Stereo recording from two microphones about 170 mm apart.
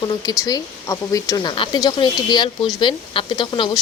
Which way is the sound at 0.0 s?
20° left (ahead or behind).